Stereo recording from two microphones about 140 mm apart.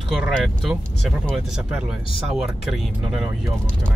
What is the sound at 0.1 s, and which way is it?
Speech, 5° right (ahead or behind).